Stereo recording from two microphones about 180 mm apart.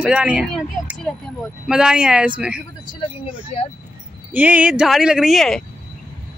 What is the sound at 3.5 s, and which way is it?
Speech, 35° left (ahead or behind).